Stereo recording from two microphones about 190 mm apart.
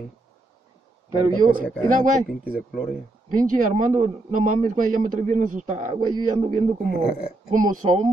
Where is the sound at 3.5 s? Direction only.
40° right (ahead or behind).